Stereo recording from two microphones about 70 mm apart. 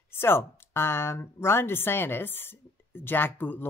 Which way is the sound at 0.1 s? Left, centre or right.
Left.